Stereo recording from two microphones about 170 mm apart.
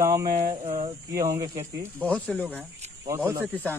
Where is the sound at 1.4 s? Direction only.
15° right (ahead or behind).